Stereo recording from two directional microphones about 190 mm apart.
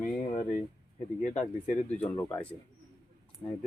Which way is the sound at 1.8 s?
10° left (ahead or behind).